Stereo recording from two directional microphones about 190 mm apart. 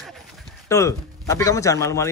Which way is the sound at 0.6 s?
15° left (ahead or behind).